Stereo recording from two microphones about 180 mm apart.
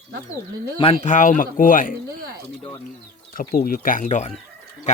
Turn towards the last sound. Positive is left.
turn(degrees=40)  # may be behind; listen again after turning